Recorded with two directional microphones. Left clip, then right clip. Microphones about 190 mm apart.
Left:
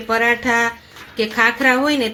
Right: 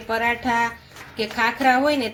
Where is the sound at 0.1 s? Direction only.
45° left (ahead or behind).